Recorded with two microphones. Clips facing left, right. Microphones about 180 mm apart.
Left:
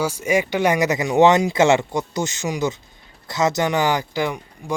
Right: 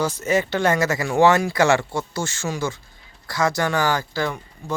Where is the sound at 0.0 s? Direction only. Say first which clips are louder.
Left 1 dB; 10° left (ahead or behind).